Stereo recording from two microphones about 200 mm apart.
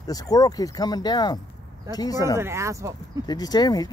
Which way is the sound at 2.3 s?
15° right (ahead or behind).